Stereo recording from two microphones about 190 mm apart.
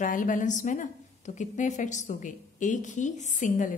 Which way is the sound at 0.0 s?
45° left (ahead or behind).